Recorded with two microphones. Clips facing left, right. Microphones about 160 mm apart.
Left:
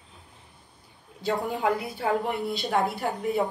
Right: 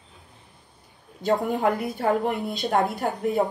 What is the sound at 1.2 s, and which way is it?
A woman's voice, 45° right (ahead or behind).